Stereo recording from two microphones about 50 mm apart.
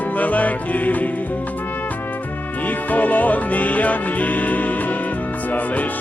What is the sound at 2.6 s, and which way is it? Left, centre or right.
Music, left.